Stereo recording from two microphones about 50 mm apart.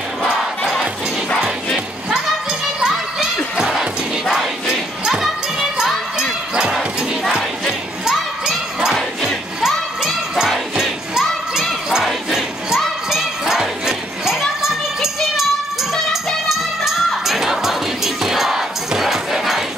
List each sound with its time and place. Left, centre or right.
3.5 s music: centre
6.5 s a sound: centre
8.0 s crowd: centre
8.9 s crowd: centre
9.6 s music: centre
10.5 s crowd: centre
14.6 s music: centre